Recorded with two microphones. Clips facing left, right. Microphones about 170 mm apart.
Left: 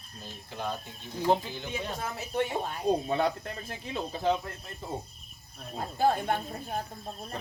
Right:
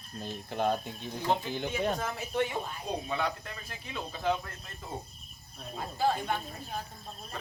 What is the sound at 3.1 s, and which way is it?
Speech, 40° left (ahead or behind).